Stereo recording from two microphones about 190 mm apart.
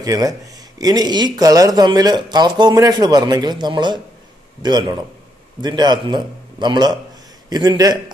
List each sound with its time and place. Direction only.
0.0 s speech: 20° right (ahead or behind)